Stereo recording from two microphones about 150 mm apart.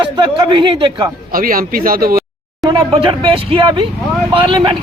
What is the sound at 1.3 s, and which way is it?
Speech, 70° right (ahead or behind).